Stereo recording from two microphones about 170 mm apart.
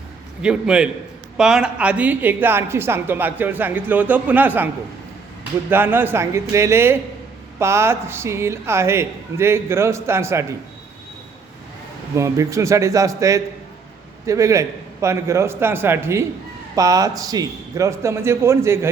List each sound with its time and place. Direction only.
0.4 s a man's voice: 5° right (ahead or behind)
5.7 s speech: 10° right (ahead or behind)
12.1 s speech: 15° right (ahead or behind)